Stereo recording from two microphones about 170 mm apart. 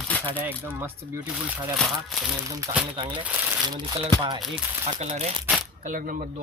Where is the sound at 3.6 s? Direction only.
25° right (ahead or behind).